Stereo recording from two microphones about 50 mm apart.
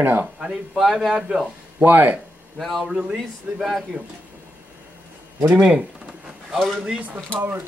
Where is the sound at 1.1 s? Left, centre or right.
Centre.